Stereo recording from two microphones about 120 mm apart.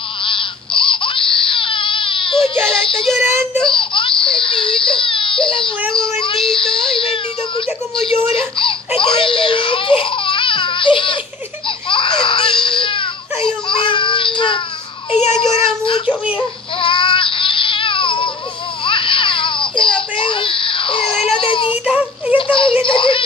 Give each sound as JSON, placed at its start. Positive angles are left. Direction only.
{"t": 0.2, "sound": "baby cry", "side_deg": 45}
{"t": 2.6, "sound": "child singing", "side_deg": 5}
{"t": 3.6, "sound": "speech", "side_deg": 45}
{"t": 8.5, "sound": "speech", "side_deg": 45}
{"t": 11.9, "sound": "crying", "side_deg": 45}
{"t": 13.7, "sound": "baby cry", "side_deg": 45}
{"t": 15.1, "sound": "a child's voice", "side_deg": 70}
{"t": 15.6, "sound": "speech", "side_deg": 45}
{"t": 16.1, "sound": "speech", "side_deg": -10}
{"t": 16.8, "sound": "baby cry", "side_deg": 45}
{"t": 21.8, "sound": "child singing", "side_deg": -10}
{"t": 22.5, "sound": "a sound", "side_deg": 45}